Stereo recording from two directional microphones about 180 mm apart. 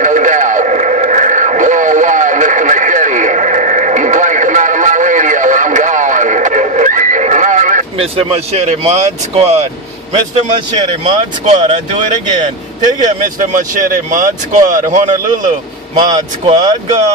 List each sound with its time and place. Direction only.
0.0 s radio: 45° right (ahead or behind)
8.2 s speech: 35° right (ahead or behind)
11.5 s speech: 40° right (ahead or behind)
15.9 s speech: 25° right (ahead or behind)